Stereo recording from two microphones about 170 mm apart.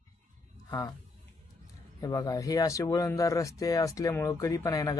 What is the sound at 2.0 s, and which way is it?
Speech, 20° left (ahead or behind).